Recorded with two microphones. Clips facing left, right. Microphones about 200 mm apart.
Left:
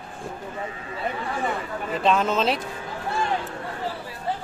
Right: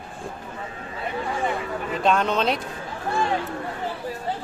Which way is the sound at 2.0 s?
Centre (ahead or behind).